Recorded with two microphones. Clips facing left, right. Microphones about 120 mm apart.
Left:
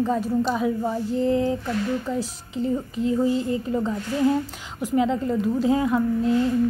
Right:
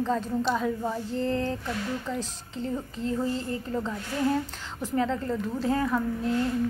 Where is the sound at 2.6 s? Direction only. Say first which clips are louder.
Left 7 dB; 15° left (ahead or behind).